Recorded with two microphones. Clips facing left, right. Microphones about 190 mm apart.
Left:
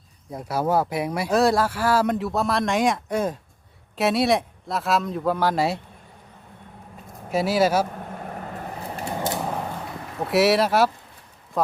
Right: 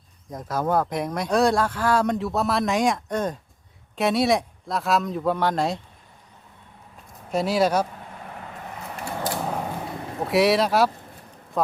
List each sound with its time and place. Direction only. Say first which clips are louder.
0.3 s speech: left 1 dB; 10° left (ahead or behind)
7.3 s speech: left 1 dB; 5° left (ahead or behind)
7.9 s vehicle: left 5 dB; 45° left (ahead or behind)
9.0 s a sound: left 1 dB; 20° left (ahead or behind)
9.4 s a sound: even; centre (ahead or behind)
10.2 s speech: left 1 dB; centre (ahead or behind)